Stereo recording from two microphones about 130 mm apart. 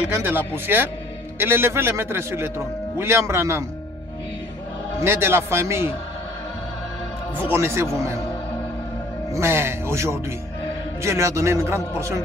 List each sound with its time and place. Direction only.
0.1 s a man's voice: 15° right (ahead or behind)
5.0 s a man's voice: 20° right (ahead or behind)
7.3 s a man's voice: 15° right (ahead or behind)
9.3 s a man's voice: 20° right (ahead or behind)